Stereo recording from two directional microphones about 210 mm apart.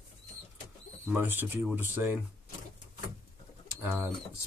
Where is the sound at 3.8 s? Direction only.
5° right (ahead or behind).